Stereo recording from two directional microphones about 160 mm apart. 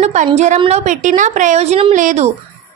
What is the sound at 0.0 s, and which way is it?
A woman's voice, 45° right (ahead or behind).